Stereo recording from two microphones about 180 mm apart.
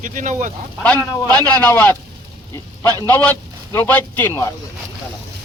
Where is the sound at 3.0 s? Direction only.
10° left (ahead or behind).